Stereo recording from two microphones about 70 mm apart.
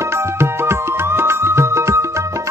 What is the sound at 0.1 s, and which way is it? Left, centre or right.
Music, right.